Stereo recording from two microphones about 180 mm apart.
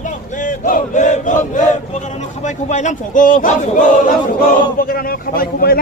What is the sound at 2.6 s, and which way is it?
A man's voice, 45° left (ahead or behind).